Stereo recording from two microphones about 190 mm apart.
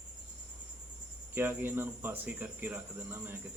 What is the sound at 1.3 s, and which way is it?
Speech, 10° right (ahead or behind).